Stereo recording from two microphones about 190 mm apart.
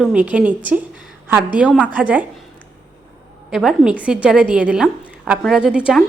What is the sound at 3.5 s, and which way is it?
A woman's voice, centre (ahead or behind).